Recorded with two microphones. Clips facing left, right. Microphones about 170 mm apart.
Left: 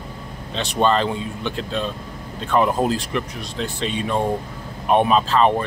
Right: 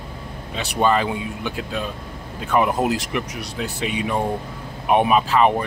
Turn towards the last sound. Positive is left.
turn(degrees=-15)  # may be behind; listen again after turning